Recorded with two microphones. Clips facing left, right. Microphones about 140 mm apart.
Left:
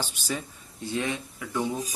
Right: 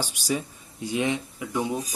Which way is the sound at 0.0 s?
15° right (ahead or behind).